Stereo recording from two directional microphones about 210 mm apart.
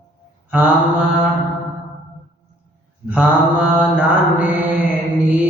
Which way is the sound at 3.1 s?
5° right (ahead or behind).